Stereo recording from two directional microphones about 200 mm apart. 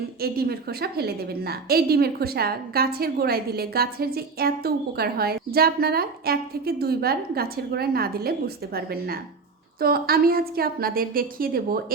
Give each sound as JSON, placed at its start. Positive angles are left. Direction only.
{"t": 0.2, "sound": "a woman's voice", "side_deg": -50}